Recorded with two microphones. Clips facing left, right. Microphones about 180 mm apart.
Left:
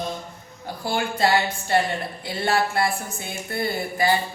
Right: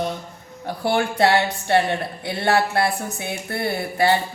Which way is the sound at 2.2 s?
70° right (ahead or behind).